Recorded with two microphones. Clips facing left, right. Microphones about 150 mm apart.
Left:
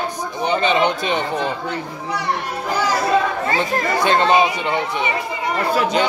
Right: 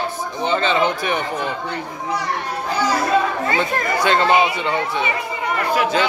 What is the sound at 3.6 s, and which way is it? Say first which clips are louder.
Speech: left 2 dB; 20° left (ahead or behind).